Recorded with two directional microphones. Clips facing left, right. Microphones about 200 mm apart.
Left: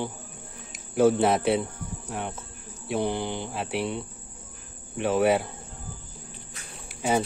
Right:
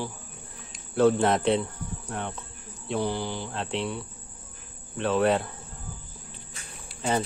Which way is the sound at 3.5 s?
10° left (ahead or behind).